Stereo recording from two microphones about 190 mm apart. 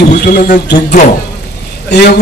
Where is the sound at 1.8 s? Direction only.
60° left (ahead or behind).